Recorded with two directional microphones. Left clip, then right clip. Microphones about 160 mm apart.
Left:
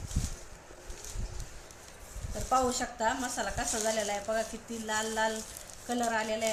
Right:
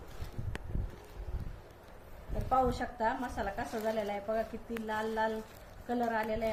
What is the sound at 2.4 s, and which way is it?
A woman's voice, 5° right (ahead or behind).